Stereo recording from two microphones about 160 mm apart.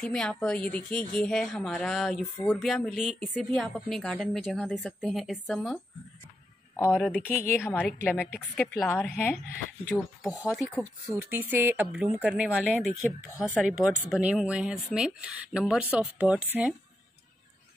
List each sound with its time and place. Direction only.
0.0 s speech: 5° left (ahead or behind)
7.0 s a woman's voice: 10° left (ahead or behind)
10.6 s a woman's voice: 15° left (ahead or behind)
11.1 s speech: 15° right (ahead or behind)